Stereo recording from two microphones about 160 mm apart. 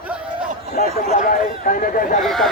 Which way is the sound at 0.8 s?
60° left (ahead or behind).